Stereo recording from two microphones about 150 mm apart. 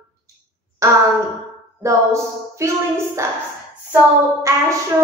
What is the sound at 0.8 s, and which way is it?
A woman's voice, 20° right (ahead or behind).